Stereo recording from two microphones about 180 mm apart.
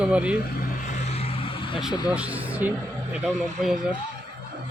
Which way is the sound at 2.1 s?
5° right (ahead or behind).